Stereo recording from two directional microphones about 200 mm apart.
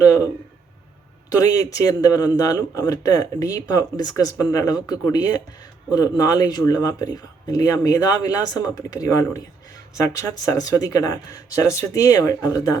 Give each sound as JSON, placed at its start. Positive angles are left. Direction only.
{"t": 1.3, "sound": "speech", "side_deg": 20}